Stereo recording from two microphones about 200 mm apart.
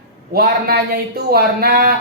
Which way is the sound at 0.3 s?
50° right (ahead or behind).